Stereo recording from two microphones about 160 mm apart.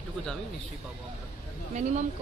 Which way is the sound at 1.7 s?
45° right (ahead or behind).